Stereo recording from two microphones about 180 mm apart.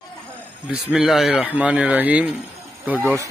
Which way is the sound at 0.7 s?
5° right (ahead or behind).